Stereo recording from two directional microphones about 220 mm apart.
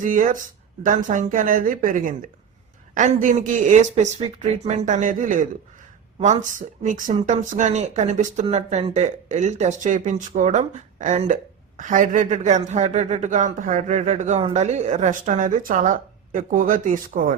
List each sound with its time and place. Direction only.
0.0 s speech: 35° right (ahead or behind)